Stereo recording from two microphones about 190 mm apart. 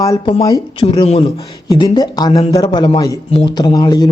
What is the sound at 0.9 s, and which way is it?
Speech, 35° left (ahead or behind).